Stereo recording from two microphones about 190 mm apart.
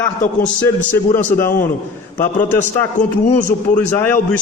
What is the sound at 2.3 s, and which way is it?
A man's voice, 45° left (ahead or behind).